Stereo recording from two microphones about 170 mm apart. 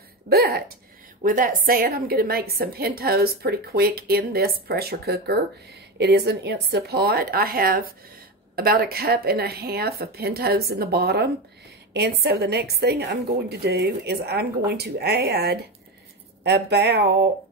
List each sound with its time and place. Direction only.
0.3 s a woman's voice: 65° right (ahead or behind)
1.2 s a woman's voice: 55° right (ahead or behind); by 15.6 s 70° right (ahead or behind)
16.4 s a woman's voice: 80° right